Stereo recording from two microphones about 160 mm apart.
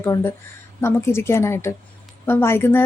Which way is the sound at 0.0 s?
15° left (ahead or behind).